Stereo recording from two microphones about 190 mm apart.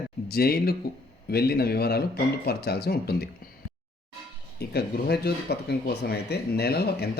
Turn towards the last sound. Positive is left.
turn(degrees=55)  # may be behind; listen again after turning